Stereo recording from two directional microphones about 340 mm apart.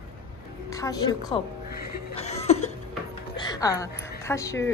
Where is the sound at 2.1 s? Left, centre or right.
Centre.